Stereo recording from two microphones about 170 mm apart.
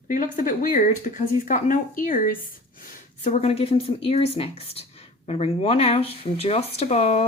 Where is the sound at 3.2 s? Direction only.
40° left (ahead or behind).